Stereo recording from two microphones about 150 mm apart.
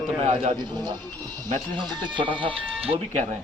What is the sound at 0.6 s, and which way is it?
Speech, 30° right (ahead or behind).